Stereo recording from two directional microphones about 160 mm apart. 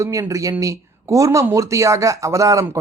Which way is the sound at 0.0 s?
20° right (ahead or behind).